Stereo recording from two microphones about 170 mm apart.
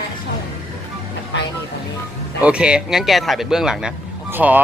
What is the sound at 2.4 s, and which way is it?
Speech, 5° right (ahead or behind).